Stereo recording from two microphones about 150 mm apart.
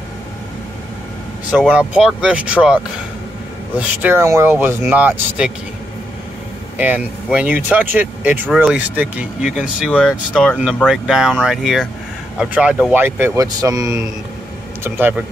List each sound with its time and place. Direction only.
1.7 s speech: 5° right (ahead or behind)
4.0 s speech: 15° right (ahead or behind)
6.8 s speech: 10° right (ahead or behind)